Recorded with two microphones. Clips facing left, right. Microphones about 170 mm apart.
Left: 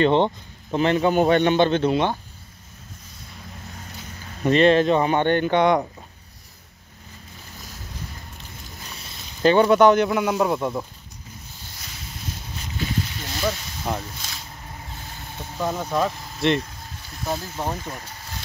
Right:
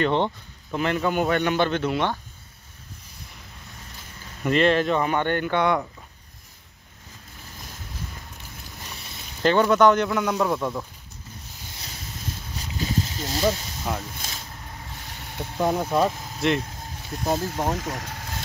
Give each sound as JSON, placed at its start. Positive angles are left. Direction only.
{"t": 0.0, "sound": "speech", "side_deg": 25}
{"t": 4.5, "sound": "speech", "side_deg": 20}
{"t": 9.4, "sound": "speech", "side_deg": 15}
{"t": 12.7, "sound": "a sound", "side_deg": -30}
{"t": 13.9, "sound": "speech", "side_deg": 0}
{"t": 15.3, "sound": "speech", "side_deg": -15}
{"t": 16.3, "sound": "speech", "side_deg": 0}
{"t": 17.4, "sound": "speech", "side_deg": -15}
{"t": 17.7, "sound": "speech", "side_deg": -80}